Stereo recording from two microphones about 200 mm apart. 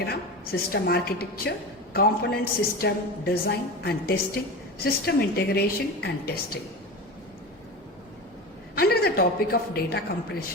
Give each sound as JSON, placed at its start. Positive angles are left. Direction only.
{"t": 0.0, "sound": "a woman's voice", "side_deg": 50}
{"t": 8.7, "sound": "a woman's voice", "side_deg": 50}